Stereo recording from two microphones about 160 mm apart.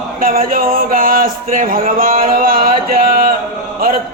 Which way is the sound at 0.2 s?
60° right (ahead or behind).